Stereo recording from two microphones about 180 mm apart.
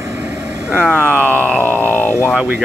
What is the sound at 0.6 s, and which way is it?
Speech, 10° right (ahead or behind).